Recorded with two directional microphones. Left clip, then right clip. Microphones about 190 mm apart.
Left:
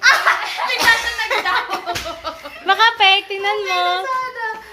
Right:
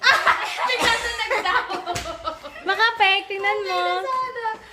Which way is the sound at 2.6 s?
10° right (ahead or behind).